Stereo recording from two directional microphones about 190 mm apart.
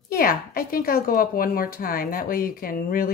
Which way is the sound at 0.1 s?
50° left (ahead or behind).